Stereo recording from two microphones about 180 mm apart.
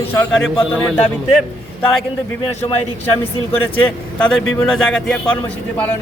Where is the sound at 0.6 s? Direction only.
5° left (ahead or behind).